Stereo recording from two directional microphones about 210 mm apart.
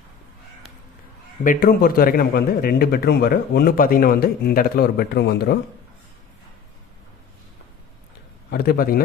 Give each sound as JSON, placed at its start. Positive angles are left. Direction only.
{"t": 1.4, "sound": "speech", "side_deg": 40}
{"t": 8.5, "sound": "speech", "side_deg": 45}